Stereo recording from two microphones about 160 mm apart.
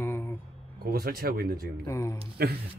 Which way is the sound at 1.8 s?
20° left (ahead or behind).